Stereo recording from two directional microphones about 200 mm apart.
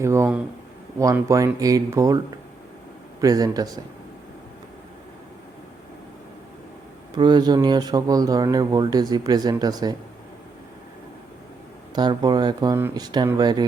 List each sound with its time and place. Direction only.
0.0 s speech: 15° right (ahead or behind)
7.2 s speech: 20° right (ahead or behind)
11.9 s speech: 20° right (ahead or behind)